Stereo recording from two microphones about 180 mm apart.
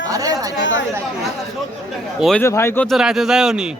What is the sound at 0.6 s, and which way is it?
Speech, 90° left.